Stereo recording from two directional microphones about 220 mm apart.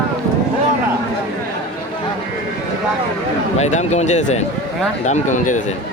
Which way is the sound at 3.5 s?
30° left (ahead or behind).